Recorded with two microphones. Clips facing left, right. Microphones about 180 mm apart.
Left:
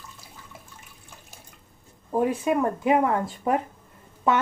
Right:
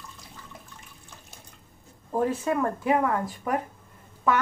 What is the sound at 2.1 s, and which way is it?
Speech, 15° left (ahead or behind).